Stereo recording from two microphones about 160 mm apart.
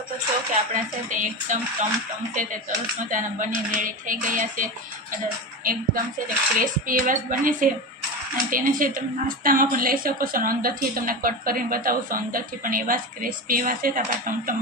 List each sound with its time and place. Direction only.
0.7 s a woman's voice: 55° right (ahead or behind)